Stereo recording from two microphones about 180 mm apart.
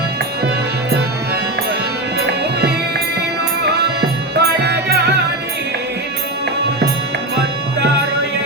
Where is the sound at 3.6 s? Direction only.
70° right (ahead or behind).